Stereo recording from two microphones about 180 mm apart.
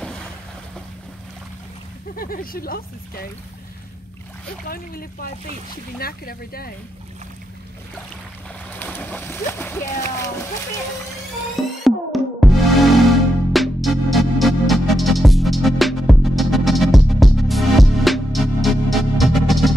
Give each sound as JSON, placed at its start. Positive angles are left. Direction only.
{"t": 2.1, "sound": "speech", "side_deg": 55}
{"t": 4.6, "sound": "speech", "side_deg": 55}
{"t": 8.7, "sound": "speech", "side_deg": 10}
{"t": 11.8, "sound": "music", "side_deg": 0}